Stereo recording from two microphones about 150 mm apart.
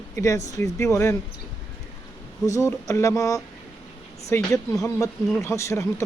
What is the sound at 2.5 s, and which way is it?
Speech, 20° left (ahead or behind).